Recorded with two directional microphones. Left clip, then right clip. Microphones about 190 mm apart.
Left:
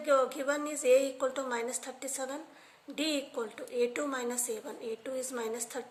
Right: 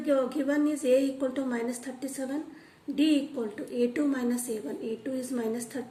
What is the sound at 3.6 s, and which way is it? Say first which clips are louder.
A woman's voice: right 3 dB; 45° left (ahead or behind).